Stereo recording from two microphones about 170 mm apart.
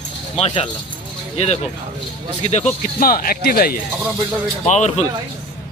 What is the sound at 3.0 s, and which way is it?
Speech, 60° left (ahead or behind).